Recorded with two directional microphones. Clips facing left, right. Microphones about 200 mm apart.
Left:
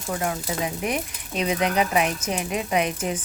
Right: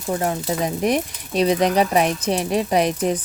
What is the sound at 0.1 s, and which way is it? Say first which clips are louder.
A woman's voice: right 5 dB; 35° right (ahead or behind).